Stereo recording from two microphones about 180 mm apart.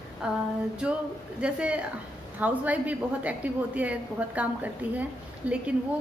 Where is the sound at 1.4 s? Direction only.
5° right (ahead or behind).